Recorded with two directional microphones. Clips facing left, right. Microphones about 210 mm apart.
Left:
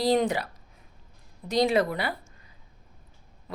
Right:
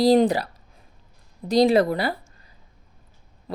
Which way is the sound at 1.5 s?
35° right (ahead or behind).